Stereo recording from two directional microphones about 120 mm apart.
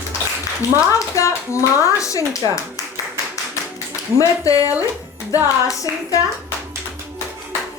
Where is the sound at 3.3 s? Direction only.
25° left (ahead or behind).